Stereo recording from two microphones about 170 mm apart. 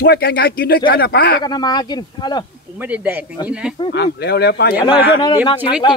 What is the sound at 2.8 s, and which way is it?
Speech, 10° right (ahead or behind).